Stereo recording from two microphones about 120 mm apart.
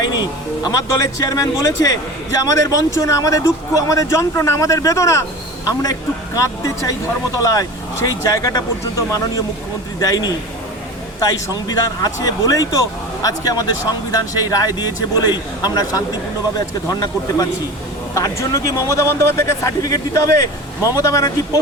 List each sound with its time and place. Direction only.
0.0 s a man's voice: 35° left (ahead or behind)
18.1 s speech: 25° left (ahead or behind)